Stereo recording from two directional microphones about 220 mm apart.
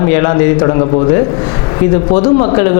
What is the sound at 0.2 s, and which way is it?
Speech, 20° left (ahead or behind).